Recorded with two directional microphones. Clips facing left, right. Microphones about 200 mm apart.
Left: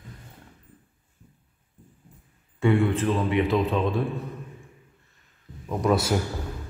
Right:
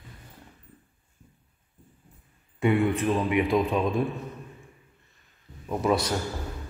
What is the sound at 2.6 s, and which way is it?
A man's voice, 15° right (ahead or behind).